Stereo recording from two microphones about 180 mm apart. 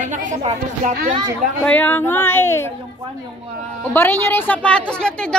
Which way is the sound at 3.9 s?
10° left (ahead or behind).